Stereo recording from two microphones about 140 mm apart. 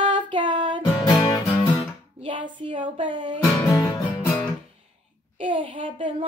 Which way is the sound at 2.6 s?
35° right (ahead or behind).